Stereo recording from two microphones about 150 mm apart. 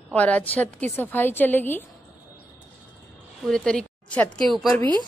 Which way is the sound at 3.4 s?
5° left (ahead or behind).